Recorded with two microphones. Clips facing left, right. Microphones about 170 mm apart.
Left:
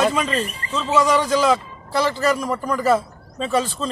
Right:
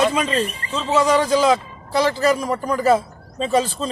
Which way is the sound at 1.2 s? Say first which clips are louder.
Right 2 dB; 5° right (ahead or behind).